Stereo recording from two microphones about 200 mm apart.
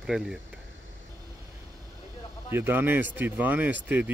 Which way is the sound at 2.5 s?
10° right (ahead or behind).